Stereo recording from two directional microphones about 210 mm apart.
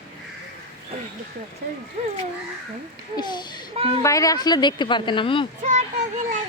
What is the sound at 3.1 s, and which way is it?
Speech, 20° left (ahead or behind).